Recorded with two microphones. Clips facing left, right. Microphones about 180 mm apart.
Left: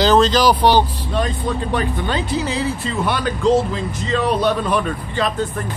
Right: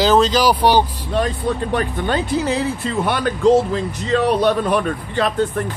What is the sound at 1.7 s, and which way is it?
Speech, 50° right (ahead or behind).